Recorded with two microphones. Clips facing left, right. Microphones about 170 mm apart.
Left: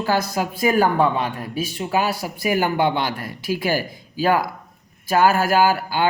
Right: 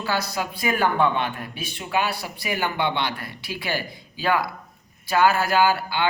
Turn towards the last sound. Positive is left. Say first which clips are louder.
# left 3 dB
turn(degrees=45)  # may be behind; listen again after turning